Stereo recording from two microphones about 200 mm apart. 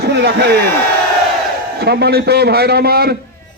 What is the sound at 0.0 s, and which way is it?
Speech, 55° right (ahead or behind).